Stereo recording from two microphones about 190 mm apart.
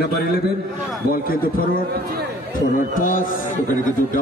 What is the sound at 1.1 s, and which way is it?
A man's voice, 50° left (ahead or behind).